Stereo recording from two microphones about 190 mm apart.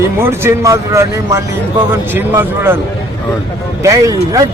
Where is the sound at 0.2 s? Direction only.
10° right (ahead or behind).